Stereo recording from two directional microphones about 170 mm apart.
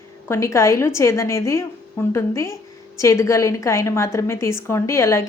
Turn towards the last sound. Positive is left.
turn(degrees=15)  # may be behind; listen again after turning